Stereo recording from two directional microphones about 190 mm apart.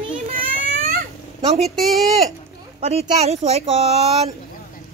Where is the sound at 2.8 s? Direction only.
35° right (ahead or behind).